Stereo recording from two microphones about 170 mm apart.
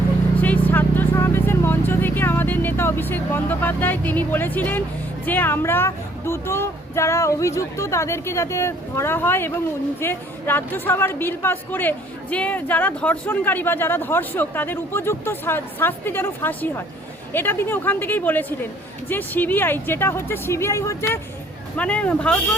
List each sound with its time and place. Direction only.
0.4 s speech: 10° left (ahead or behind)